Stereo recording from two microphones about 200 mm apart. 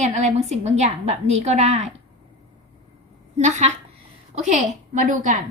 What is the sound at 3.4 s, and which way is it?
A woman's voice, 35° right (ahead or behind).